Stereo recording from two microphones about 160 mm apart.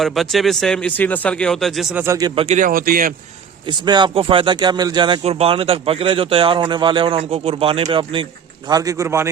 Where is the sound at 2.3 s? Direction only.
40° right (ahead or behind).